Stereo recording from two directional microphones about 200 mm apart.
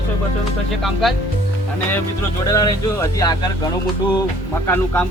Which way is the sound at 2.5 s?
15° left (ahead or behind).